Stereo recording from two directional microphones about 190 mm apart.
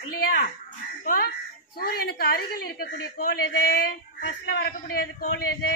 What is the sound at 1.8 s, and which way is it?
A woman's voice, 55° left (ahead or behind).